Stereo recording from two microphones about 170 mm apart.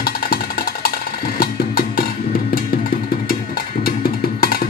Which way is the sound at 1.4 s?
60° left (ahead or behind).